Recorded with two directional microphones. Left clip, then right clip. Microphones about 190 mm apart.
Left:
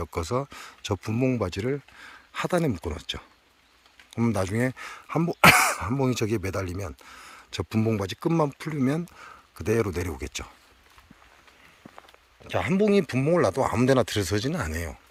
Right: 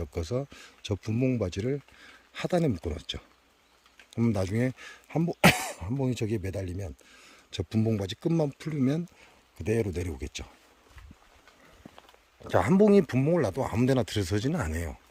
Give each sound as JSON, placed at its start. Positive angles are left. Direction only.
{"t": 0.0, "sound": "speech", "side_deg": -5}
{"t": 5.5, "sound": "speech", "side_deg": 45}
{"t": 6.0, "sound": "speech", "side_deg": 0}
{"t": 12.5, "sound": "speech", "side_deg": -30}